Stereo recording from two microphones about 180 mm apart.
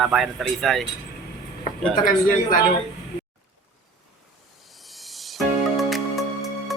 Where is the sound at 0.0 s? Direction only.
Centre (ahead or behind).